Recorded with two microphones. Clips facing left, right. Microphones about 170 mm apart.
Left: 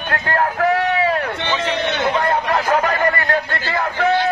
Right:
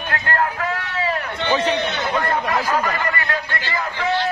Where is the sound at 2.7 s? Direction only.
60° left (ahead or behind).